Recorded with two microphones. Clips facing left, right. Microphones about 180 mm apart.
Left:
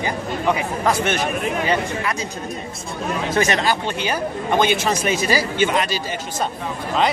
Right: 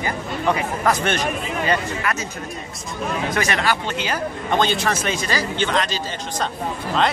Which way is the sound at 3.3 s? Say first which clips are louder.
Left 4 dB; 25° left (ahead or behind).